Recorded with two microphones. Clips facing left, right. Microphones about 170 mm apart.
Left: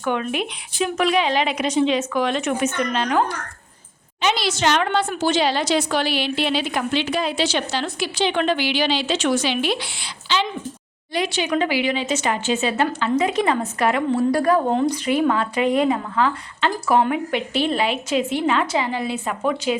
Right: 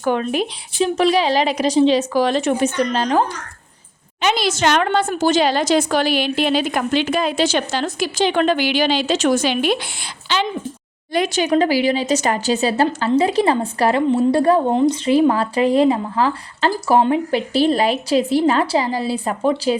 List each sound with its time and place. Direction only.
0.0 s a woman's voice: 35° right (ahead or behind)
4.2 s a woman's voice: 50° right (ahead or behind)
11.1 s a woman's voice: 45° right (ahead or behind)